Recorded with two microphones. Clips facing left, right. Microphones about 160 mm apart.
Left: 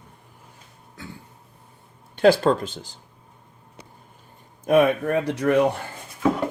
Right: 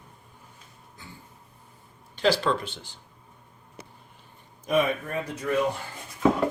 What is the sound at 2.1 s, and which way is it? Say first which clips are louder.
Speech: left 7 dB; 55° left (ahead or behind).